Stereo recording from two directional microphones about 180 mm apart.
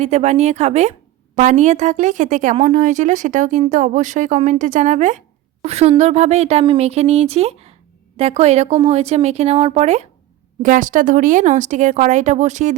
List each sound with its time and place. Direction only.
0.0 s a woman's voice: 40° right (ahead or behind)